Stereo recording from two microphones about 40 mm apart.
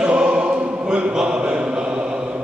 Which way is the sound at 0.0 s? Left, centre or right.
Right.